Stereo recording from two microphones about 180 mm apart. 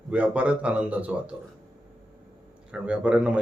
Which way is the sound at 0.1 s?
5° right (ahead or behind).